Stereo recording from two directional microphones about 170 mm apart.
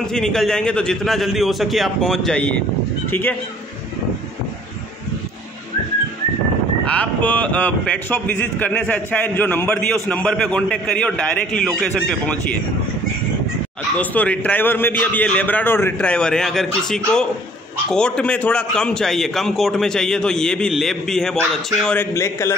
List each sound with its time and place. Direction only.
0.0 s a man's voice: 5° left (ahead or behind)
6.9 s a man's voice: 10° left (ahead or behind)
13.9 s a man's voice: 10° left (ahead or behind)
21.8 s a man's voice: 15° left (ahead or behind)